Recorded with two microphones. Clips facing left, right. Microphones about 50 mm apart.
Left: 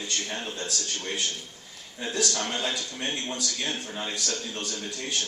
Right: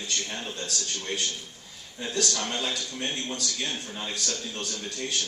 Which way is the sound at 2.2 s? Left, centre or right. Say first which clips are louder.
Left 1 dB; left.